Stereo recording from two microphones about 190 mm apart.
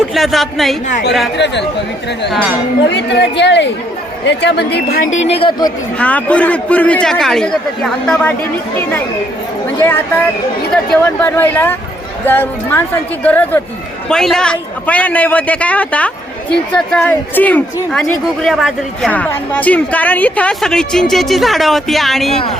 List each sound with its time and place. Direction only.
0.1 s a woman's voice: centre (ahead or behind)
1.4 s speech: 65° left (ahead or behind)
2.9 s a woman's voice: 65° left (ahead or behind)
5.3 s speech: 25° left (ahead or behind)
6.0 s a man's voice: 5° left (ahead or behind)
9.8 s a man's voice: 10° left (ahead or behind)